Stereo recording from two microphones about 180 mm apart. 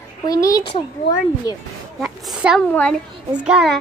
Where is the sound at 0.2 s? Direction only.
20° left (ahead or behind).